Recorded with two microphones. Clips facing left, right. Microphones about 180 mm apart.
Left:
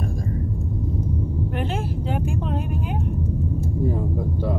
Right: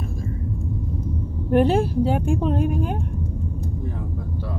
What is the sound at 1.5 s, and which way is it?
Speech, 40° right (ahead or behind).